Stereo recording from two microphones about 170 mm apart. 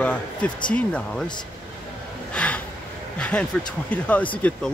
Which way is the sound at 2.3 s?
10° left (ahead or behind).